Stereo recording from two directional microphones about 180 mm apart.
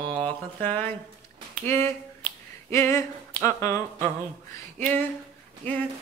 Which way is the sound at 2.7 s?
15° left (ahead or behind).